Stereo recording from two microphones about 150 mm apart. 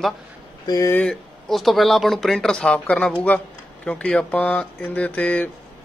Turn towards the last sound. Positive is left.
turn(degrees=10)  # may be behind; listen again after turning